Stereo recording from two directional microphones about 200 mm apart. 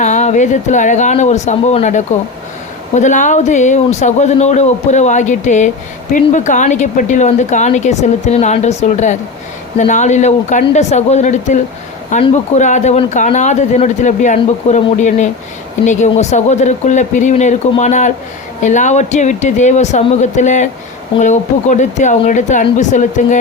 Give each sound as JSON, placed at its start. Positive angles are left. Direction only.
{"t": 0.0, "sound": "speech", "side_deg": 35}